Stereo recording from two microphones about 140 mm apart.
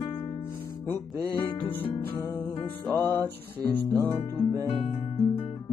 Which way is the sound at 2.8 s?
15° left (ahead or behind).